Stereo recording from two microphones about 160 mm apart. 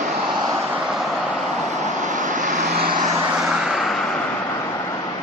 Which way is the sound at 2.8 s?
65° right (ahead or behind).